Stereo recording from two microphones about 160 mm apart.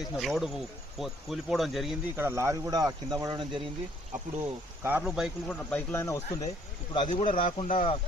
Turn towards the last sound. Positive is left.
turn(degrees=45)  # may be behind; listen again after turning